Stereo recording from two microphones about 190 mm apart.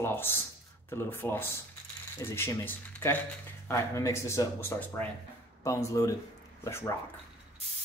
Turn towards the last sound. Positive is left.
turn(degrees=15)  # may be behind; listen again after turning